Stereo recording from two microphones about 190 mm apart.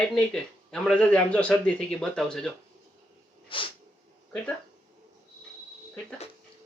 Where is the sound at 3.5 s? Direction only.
25° left (ahead or behind).